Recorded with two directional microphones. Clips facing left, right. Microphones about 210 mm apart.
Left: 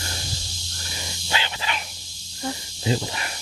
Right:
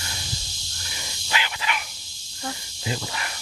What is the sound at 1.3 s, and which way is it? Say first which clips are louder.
Dog: even; 30° left (ahead or behind).